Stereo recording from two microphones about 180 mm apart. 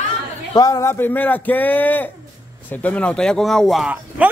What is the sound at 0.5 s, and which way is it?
Speech, 20° left (ahead or behind).